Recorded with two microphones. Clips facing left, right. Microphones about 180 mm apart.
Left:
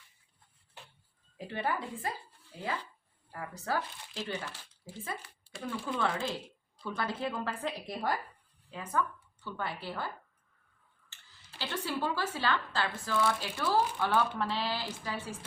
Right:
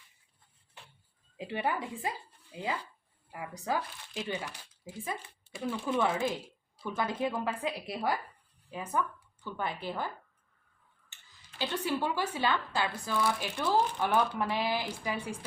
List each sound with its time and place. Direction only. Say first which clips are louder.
1.4 s a woman's voice: right 1 dB; 15° right (ahead or behind)
11.1 s speech: left 2 dB; 15° right (ahead or behind)